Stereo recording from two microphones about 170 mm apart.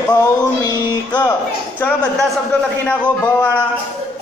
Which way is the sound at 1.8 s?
10° left (ahead or behind).